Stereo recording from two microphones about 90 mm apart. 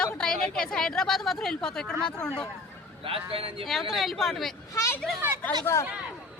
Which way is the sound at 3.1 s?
90° right.